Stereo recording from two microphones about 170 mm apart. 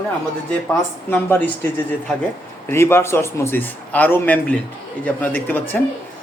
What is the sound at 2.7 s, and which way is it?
A man's voice, 15° left (ahead or behind).